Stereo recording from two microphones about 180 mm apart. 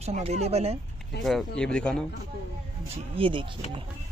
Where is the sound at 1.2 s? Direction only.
Centre (ahead or behind).